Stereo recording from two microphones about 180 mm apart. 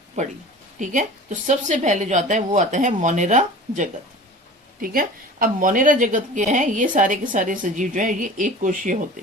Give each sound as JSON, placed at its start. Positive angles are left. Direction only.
{"t": 0.2, "sound": "a woman's voice", "side_deg": -40}
{"t": 4.8, "sound": "a woman's voice", "side_deg": -50}